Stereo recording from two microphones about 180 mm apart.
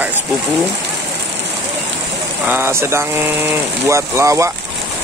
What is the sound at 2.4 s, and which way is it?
Speech, 10° right (ahead or behind).